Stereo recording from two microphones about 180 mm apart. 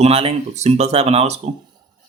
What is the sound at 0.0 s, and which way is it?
Speech, 35° right (ahead or behind).